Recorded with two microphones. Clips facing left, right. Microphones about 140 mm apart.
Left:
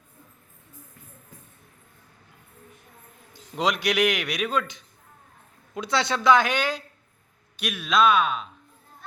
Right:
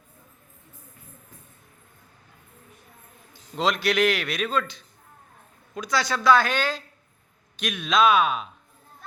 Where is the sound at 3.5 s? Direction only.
15° left (ahead or behind); by 8.4 s 5° right (ahead or behind).